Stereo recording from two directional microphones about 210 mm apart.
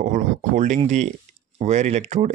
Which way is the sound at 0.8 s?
35° right (ahead or behind).